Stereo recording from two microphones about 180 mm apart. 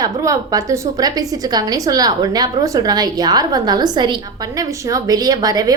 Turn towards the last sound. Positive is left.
turn(degrees=-20)  # may be behind; listen again after turning